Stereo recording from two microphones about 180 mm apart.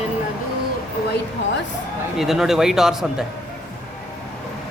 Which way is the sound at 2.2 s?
Centre (ahead or behind).